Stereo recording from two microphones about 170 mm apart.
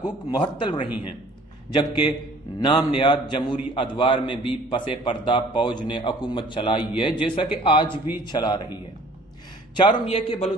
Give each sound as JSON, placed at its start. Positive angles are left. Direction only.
{"t": 0.0, "sound": "a man's voice", "side_deg": 25}
{"t": 9.8, "sound": "a man's voice", "side_deg": 30}